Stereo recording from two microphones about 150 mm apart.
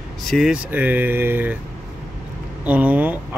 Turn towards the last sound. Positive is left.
turn(degrees=-10)  # may be behind; listen again after turning